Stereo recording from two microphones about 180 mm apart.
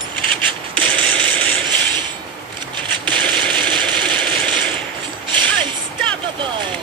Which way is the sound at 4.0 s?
25° right (ahead or behind).